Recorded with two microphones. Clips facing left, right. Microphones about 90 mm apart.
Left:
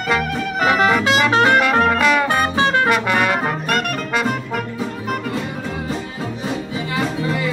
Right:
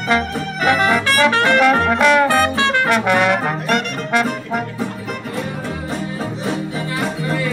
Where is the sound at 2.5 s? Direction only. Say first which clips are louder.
Left 1 dB; 20° left (ahead or behind).